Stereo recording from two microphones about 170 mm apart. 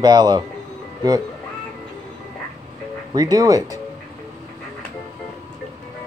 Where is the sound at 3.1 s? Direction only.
20° right (ahead or behind).